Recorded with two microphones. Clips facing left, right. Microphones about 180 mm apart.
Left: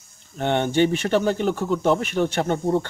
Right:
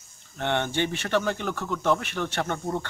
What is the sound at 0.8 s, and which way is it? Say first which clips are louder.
Speech: left 6 dB; 30° left (ahead or behind).